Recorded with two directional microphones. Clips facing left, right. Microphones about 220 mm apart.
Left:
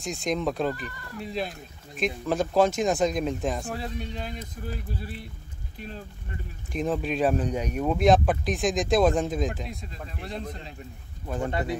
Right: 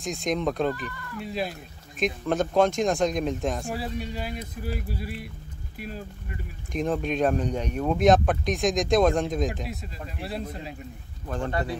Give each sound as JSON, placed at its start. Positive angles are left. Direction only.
{"t": 0.0, "sound": "speech", "side_deg": 0}
{"t": 6.7, "sound": "speech", "side_deg": 0}
{"t": 11.2, "sound": "speech", "side_deg": 10}
{"t": 11.5, "sound": "speech", "side_deg": 20}